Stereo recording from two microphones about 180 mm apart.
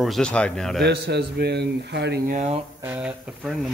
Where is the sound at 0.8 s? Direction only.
65° right (ahead or behind); by 2.5 s 50° right (ahead or behind).